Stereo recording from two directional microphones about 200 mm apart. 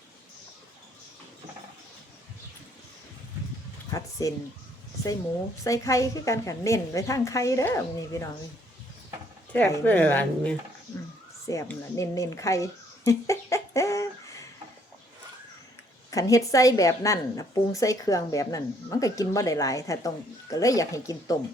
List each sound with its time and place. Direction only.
3.9 s a woman's voice: 15° left (ahead or behind)
5.6 s a woman's voice: 15° left (ahead or behind)
9.5 s a woman's voice: 10° left (ahead or behind)
11.4 s a sound: 15° left (ahead or behind)
16.0 s a woman's voice: 15° left (ahead or behind)